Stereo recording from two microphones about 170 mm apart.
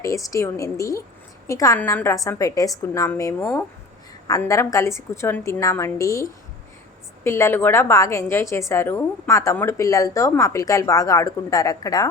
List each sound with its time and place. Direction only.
0.0 s a woman's voice: 20° left (ahead or behind)
7.3 s a woman's voice: 15° left (ahead or behind)